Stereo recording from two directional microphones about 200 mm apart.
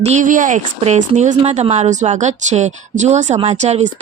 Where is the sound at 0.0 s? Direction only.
35° right (ahead or behind).